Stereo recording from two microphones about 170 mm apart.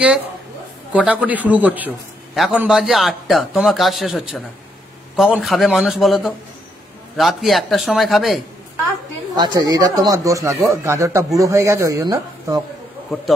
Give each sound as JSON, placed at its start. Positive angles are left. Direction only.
{"t": 0.9, "sound": "a man's voice", "side_deg": -10}
{"t": 9.3, "sound": "speech", "side_deg": -25}